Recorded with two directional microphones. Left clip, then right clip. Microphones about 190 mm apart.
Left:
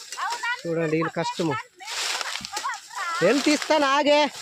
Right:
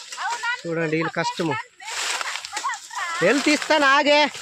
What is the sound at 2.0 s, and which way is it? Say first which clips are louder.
Splash: right 2 dB; 15° left (ahead or behind).